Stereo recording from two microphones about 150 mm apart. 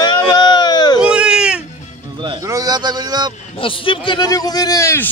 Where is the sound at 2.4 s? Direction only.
25° right (ahead or behind).